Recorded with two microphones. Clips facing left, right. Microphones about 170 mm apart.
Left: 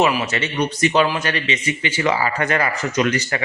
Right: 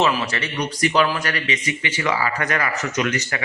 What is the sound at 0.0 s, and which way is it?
A man's voice, 15° left (ahead or behind).